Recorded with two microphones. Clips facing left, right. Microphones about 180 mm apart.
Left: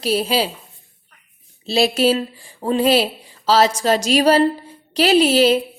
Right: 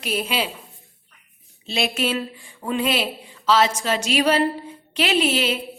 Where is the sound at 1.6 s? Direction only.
35° left (ahead or behind).